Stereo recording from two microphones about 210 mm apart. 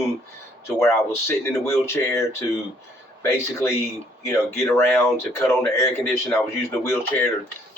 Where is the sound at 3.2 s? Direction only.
10° left (ahead or behind).